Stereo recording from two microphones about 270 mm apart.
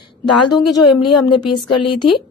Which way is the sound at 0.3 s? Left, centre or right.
Left.